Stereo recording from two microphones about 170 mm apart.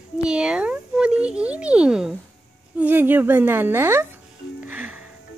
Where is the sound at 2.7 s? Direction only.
10° right (ahead or behind).